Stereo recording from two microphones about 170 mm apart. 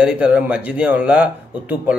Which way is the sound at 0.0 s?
5° right (ahead or behind).